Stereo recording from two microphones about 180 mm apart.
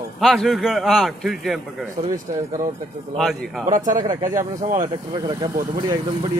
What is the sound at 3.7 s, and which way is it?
Speech, 45° right (ahead or behind).